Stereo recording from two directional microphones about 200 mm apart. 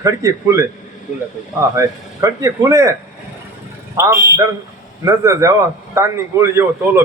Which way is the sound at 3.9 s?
15° right (ahead or behind).